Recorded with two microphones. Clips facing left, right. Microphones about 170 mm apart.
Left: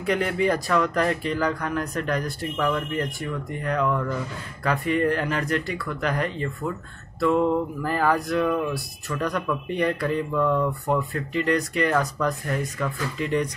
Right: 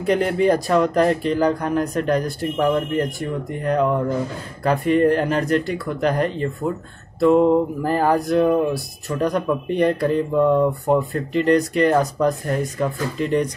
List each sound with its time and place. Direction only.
0.0 s speech: 35° right (ahead or behind)